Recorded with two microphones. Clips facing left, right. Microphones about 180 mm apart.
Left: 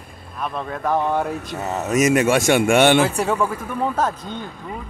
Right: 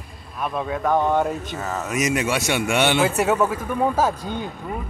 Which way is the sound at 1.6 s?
25° left (ahead or behind).